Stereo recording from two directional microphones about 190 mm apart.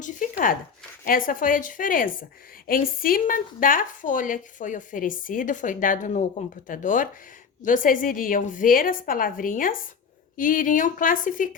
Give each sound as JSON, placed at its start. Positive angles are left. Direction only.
{"t": 0.0, "sound": "zipper", "side_deg": 45}
{"t": 1.0, "sound": "a woman's voice", "side_deg": 45}